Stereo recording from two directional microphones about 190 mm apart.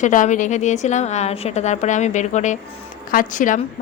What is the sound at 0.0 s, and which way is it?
A woman's voice, 40° left (ahead or behind).